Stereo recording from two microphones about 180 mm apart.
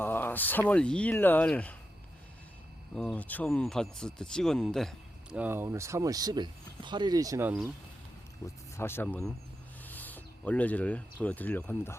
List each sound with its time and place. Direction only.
0.0 s speech: 10° left (ahead or behind)
2.9 s speech: 5° left (ahead or behind)
5.4 s speech: 10° right (ahead or behind)
8.4 s speech: 15° left (ahead or behind)